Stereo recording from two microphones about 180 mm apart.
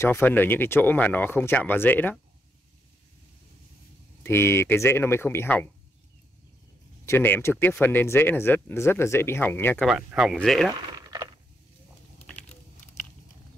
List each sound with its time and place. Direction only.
0.0 s speech: 10° left (ahead or behind)
4.2 s speech: 15° left (ahead or behind)
7.1 s speech: 10° left (ahead or behind)
9.8 s speech: centre (ahead or behind)
11.0 s a sound: 20° right (ahead or behind)